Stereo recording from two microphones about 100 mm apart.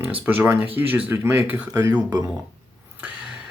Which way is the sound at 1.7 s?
40° right (ahead or behind).